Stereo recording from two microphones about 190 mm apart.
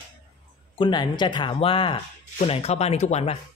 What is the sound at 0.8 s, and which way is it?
Speech, 25° left (ahead or behind).